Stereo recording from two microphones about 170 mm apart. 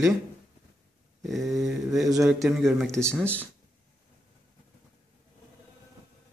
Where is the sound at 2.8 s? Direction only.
15° right (ahead or behind).